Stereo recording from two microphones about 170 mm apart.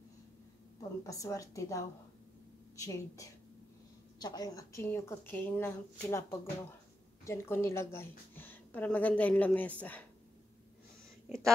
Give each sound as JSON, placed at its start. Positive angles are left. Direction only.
{"t": 0.7, "sound": "a woman's voice", "side_deg": 20}
{"t": 7.2, "sound": "speech", "side_deg": 15}
{"t": 11.2, "sound": "speech", "side_deg": 0}